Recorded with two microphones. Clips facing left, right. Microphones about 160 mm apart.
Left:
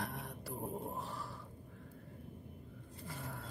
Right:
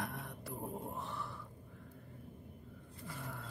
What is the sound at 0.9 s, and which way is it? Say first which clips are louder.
Grunt: even; 35° left (ahead or behind).